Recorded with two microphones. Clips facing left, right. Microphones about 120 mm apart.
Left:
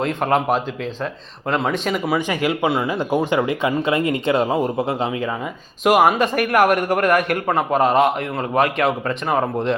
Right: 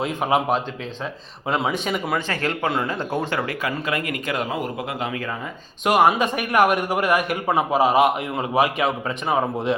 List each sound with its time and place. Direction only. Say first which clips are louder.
0.0 s a man's voice: left 2 dB; 5° right (ahead or behind)
2.1 s speech: left 4 dB; 15° left (ahead or behind)
5.8 s a man's voice: left 2 dB; centre (ahead or behind)